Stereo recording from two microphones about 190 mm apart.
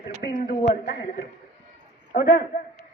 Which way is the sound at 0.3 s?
50° left (ahead or behind).